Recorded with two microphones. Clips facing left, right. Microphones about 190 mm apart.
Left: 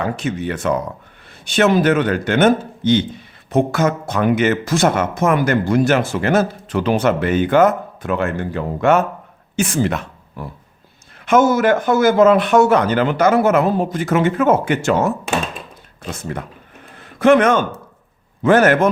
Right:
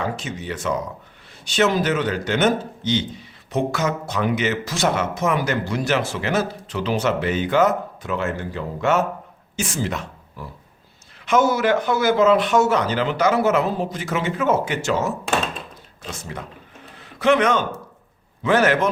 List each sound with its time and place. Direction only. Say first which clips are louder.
0.0 s a man's voice: left 6 dB; 60° left (ahead or behind)
16.8 s a sound: left 6 dB; 50° left (ahead or behind)
18.4 s a man's voice: left 5 dB; 50° left (ahead or behind)